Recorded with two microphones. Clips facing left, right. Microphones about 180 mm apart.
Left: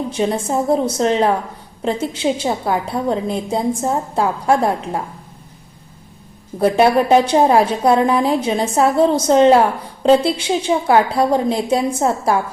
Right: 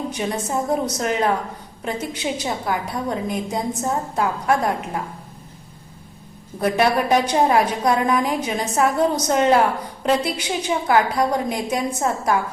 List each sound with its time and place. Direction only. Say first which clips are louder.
0.1 s a woman's voice: left 5 dB; 25° left (ahead or behind)
6.6 s a woman's voice: left 5 dB; 30° left (ahead or behind)